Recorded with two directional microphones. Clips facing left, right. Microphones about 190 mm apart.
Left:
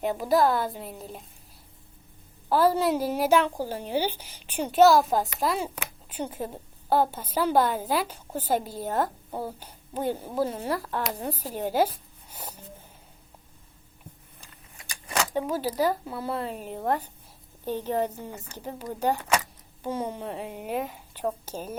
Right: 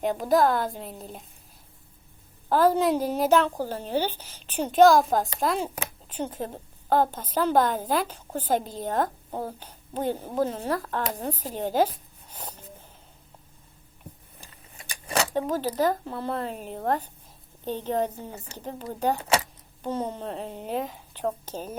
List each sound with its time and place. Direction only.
0.0 s a woman's voice: 5° left (ahead or behind)
2.5 s a woman's voice: 10° left (ahead or behind)
11.5 s a sound: 10° left (ahead or behind)
14.8 s a sound: 30° right (ahead or behind)
15.3 s a woman's voice: 10° left (ahead or behind)
18.2 s a woman's voice: 15° right (ahead or behind)
18.5 s a woman's voice: 10° left (ahead or behind)